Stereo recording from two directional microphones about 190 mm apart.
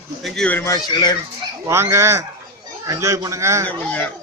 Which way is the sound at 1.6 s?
15° right (ahead or behind).